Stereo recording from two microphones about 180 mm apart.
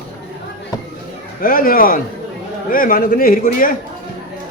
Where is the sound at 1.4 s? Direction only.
50° left (ahead or behind).